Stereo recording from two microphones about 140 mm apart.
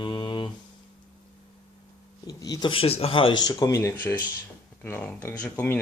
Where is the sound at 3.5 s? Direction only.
25° left (ahead or behind).